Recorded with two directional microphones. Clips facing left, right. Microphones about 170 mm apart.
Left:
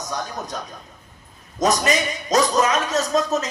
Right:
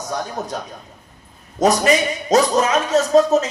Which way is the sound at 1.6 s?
30° right (ahead or behind).